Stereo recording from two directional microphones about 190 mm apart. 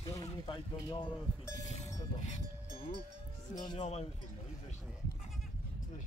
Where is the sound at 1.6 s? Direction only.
40° left (ahead or behind).